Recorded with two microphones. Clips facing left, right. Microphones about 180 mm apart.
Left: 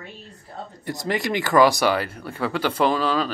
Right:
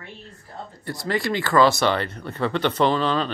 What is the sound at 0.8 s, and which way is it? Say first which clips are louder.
Speech: even; 20° left (ahead or behind).